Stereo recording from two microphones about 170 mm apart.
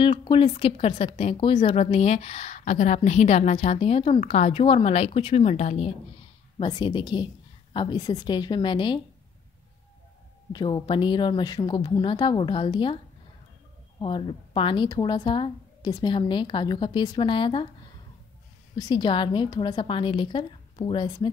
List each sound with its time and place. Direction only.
0.0 s speech: 30° left (ahead or behind)
6.6 s speech: 30° left (ahead or behind)
10.5 s speech: 25° left (ahead or behind)
18.8 s speech: 25° left (ahead or behind)